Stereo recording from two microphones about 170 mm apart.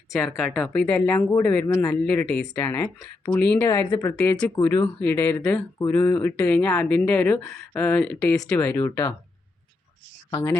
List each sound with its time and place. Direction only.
0.1 s speech: centre (ahead or behind)
3.8 s a woman's voice: 30° left (ahead or behind)
4.0 s speech: 10° left (ahead or behind)
8.5 s speech: 15° left (ahead or behind)
10.3 s speech: 15° left (ahead or behind)